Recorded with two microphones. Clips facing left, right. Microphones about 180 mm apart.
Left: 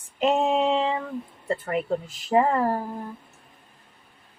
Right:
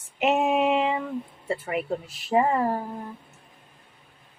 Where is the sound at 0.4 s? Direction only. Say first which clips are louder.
Even; 10° right (ahead or behind).